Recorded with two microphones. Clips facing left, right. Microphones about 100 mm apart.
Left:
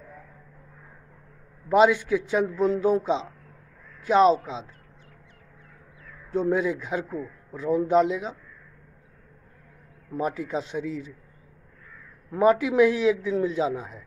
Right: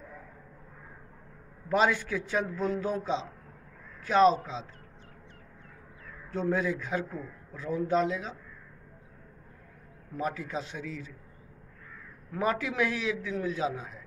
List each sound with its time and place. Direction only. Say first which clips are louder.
1.7 s a man's voice: left 7 dB; 20° left (ahead or behind)
6.3 s a man's voice: left 5 dB; 20° left (ahead or behind)
10.1 s a man's voice: left 5 dB; 20° left (ahead or behind)
12.3 s a man's voice: left 9 dB; 20° left (ahead or behind)